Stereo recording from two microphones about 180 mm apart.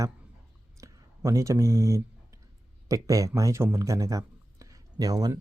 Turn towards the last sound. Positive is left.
turn(degrees=-20)  # may be behind; listen again after turning